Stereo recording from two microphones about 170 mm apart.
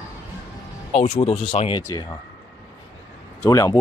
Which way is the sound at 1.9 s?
20° left (ahead or behind).